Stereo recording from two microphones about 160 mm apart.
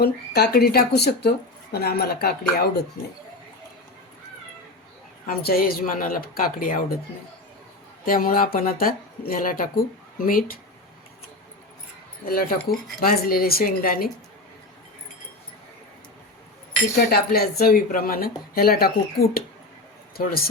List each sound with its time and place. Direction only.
0.0 s speech: 85° left
5.2 s speech: 65° left (ahead or behind)
8.0 s speech: 60° left (ahead or behind)
12.3 s speech: 65° left (ahead or behind)
17.0 s speech: 75° left (ahead or behind)